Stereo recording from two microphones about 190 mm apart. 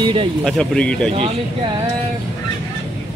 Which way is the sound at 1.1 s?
30° right (ahead or behind).